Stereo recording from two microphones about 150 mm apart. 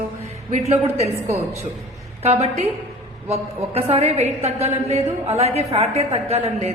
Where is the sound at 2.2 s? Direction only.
45° right (ahead or behind).